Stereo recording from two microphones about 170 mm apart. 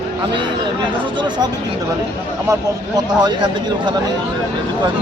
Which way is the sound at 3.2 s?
25° right (ahead or behind).